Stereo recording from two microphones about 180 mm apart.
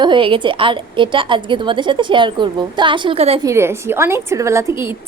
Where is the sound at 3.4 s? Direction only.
15° right (ahead or behind).